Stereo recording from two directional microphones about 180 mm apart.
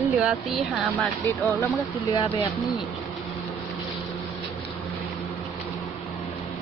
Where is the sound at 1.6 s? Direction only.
25° left (ahead or behind).